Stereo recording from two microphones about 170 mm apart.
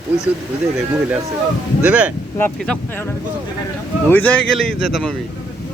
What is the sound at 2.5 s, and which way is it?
Speech, 5° left (ahead or behind).